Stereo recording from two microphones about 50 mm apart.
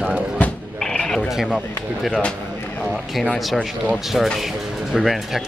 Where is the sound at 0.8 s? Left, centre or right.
Centre.